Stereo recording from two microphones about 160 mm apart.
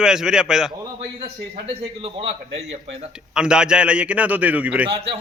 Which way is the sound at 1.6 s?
35° right (ahead or behind).